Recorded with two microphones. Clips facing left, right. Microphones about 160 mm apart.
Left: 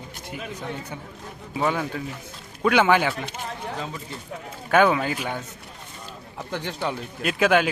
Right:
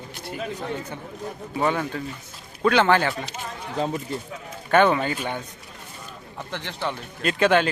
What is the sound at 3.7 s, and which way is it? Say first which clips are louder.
Speech: right 7 dB; 40° right (ahead or behind).